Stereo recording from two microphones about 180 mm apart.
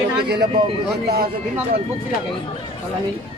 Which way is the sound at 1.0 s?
60° right (ahead or behind).